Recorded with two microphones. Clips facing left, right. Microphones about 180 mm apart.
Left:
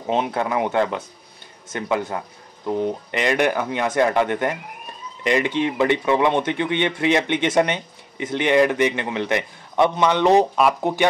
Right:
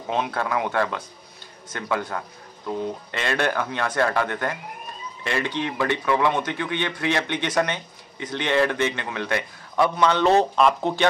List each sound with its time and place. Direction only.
0.1 s speech: 20° left (ahead or behind)